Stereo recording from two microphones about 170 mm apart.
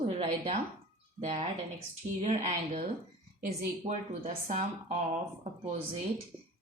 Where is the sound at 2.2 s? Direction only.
45° right (ahead or behind).